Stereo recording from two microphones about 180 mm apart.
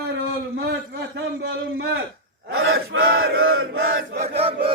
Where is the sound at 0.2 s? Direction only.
60° right (ahead or behind); by 1.9 s 80° right.